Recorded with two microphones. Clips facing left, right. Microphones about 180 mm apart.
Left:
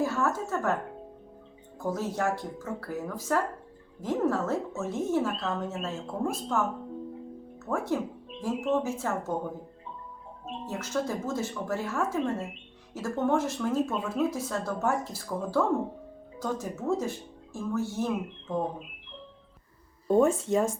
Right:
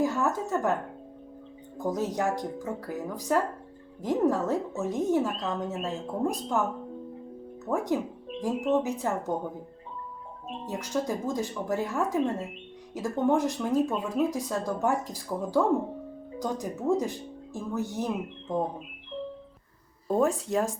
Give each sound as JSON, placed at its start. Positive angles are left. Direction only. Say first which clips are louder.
{"t": 0.0, "sound": "speech", "louder": "right 1 dB", "side_deg": -15}
{"t": 1.8, "sound": "speech", "louder": "right 1 dB", "side_deg": -15}
{"t": 7.6, "sound": "speech", "louder": "right 2 dB", "side_deg": -15}
{"t": 10.7, "sound": "speech", "louder": "right 1 dB", "side_deg": -15}
{"t": 20.1, "sound": "speech", "louder": "left 3 dB", "side_deg": 0}